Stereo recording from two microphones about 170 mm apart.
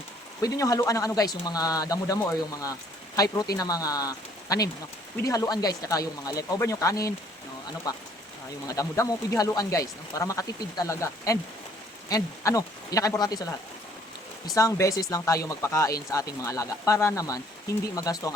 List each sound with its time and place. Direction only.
0.4 s speech: 20° left (ahead or behind)
14.5 s speech: 20° left (ahead or behind)